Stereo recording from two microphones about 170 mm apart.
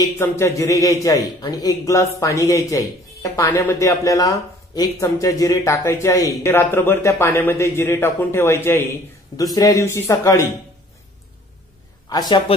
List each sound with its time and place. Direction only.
0.2 s a man's voice: 15° left (ahead or behind)
12.1 s a man's voice: 25° left (ahead or behind)